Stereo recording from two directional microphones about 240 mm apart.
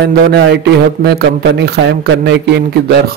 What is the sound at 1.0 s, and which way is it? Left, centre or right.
A man's voice, right.